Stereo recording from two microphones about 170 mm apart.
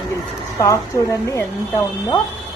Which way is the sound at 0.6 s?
20° left (ahead or behind).